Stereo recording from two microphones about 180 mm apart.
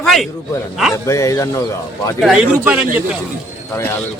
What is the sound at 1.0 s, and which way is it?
Speech, 15° left (ahead or behind).